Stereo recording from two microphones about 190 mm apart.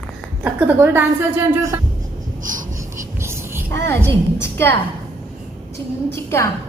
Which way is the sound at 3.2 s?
15° right (ahead or behind).